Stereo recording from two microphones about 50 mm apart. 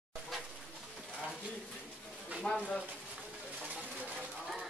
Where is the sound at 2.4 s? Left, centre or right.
Left.